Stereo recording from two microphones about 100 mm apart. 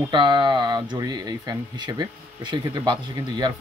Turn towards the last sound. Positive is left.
turn(degrees=-45)  # may be behind; listen again after turning